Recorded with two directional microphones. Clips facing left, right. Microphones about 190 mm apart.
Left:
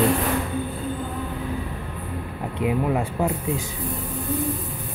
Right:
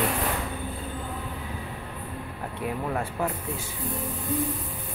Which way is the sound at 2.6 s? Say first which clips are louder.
Left 7 dB; 20° left (ahead or behind).